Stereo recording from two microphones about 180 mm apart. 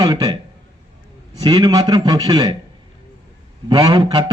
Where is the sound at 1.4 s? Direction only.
20° right (ahead or behind).